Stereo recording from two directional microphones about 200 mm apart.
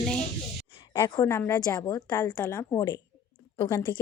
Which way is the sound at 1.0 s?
15° left (ahead or behind).